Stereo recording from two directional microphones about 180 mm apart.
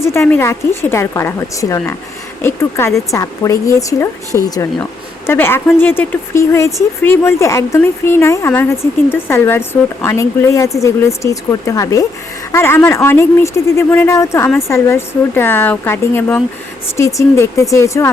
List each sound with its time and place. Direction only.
0.0 s speech: 15° left (ahead or behind)
2.4 s a woman's voice: 15° left (ahead or behind)